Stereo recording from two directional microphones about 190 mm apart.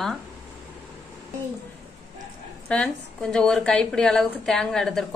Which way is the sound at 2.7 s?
5° left (ahead or behind).